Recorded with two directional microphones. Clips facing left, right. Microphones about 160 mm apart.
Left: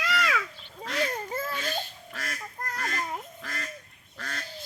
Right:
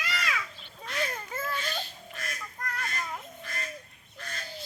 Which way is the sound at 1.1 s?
30° left (ahead or behind).